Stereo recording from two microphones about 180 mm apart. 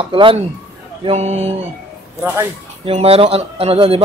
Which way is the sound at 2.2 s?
15° right (ahead or behind).